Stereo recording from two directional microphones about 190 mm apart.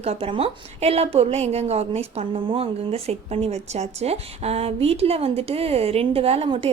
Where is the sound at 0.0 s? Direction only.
30° right (ahead or behind).